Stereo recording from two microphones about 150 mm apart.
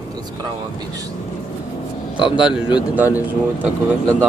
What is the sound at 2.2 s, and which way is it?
Speech, 5° right (ahead or behind).